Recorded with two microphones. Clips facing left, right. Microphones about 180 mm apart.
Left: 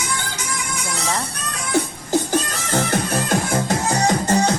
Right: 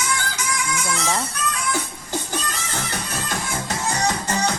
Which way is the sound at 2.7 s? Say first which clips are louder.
Left 14 dB; 50° left (ahead or behind).